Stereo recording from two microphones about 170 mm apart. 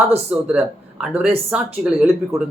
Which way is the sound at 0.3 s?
5° right (ahead or behind).